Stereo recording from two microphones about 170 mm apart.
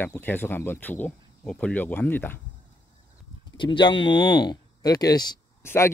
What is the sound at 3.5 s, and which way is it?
Speech, 25° left (ahead or behind).